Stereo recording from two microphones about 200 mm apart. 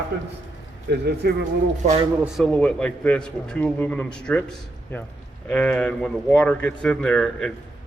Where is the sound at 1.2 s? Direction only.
55° right (ahead or behind).